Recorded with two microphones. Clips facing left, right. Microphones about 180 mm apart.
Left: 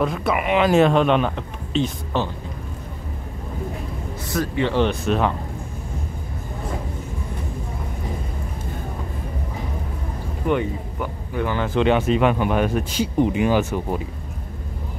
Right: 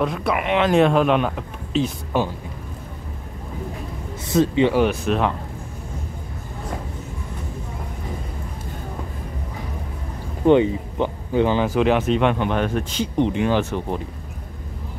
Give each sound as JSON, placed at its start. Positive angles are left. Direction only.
{"t": 0.0, "sound": "speech", "side_deg": 0}
{"t": 4.3, "sound": "speech", "side_deg": -20}
{"t": 10.4, "sound": "speech", "side_deg": -25}
{"t": 11.7, "sound": "speech", "side_deg": 0}